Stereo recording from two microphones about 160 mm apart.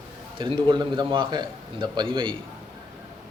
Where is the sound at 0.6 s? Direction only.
30° right (ahead or behind).